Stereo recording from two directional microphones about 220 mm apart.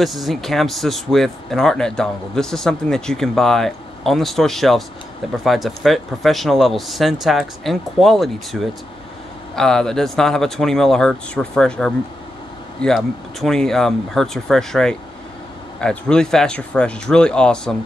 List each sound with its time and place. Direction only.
0.0 s speech: centre (ahead or behind)